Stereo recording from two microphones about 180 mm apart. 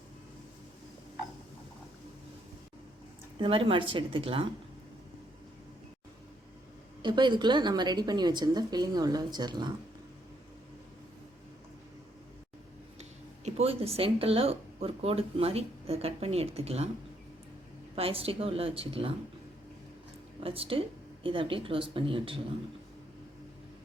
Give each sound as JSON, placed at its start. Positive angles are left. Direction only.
{"t": 3.3, "sound": "a woman's voice", "side_deg": -30}
{"t": 7.0, "sound": "a woman's voice", "side_deg": -25}
{"t": 13.0, "sound": "speech", "side_deg": -35}
{"t": 17.9, "sound": "a woman's voice", "side_deg": -30}
{"t": 20.4, "sound": "a woman's voice", "side_deg": -30}